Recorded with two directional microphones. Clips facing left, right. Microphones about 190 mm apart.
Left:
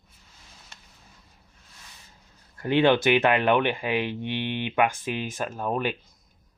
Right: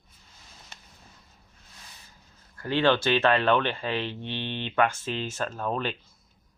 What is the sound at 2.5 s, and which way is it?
Speech, 20° left (ahead or behind).